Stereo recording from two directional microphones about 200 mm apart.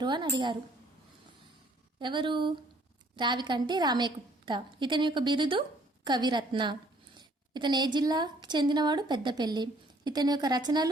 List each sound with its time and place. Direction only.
0.0 s a woman's voice: 20° right (ahead or behind)
2.0 s a woman's voice: 25° right (ahead or behind)